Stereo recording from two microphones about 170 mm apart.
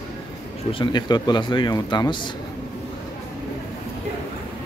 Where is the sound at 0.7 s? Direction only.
25° left (ahead or behind).